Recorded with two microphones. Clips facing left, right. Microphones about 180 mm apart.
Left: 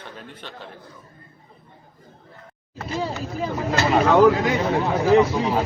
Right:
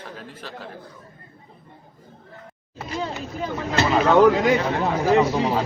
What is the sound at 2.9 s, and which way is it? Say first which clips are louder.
Speech: left 2 dB; 5° left (ahead or behind).